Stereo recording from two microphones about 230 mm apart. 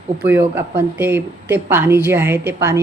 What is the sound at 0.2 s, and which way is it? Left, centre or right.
Speech, centre.